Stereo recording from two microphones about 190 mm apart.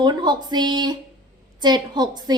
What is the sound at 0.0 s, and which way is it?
A woman's voice, 25° right (ahead or behind).